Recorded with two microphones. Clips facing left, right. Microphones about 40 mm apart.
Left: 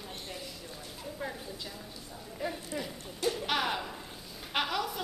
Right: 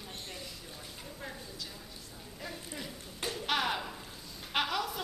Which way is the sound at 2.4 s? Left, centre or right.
Centre.